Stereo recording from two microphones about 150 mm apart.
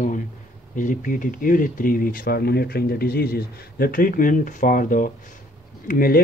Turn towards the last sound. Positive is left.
turn(degrees=70)  # may be behind; listen again after turning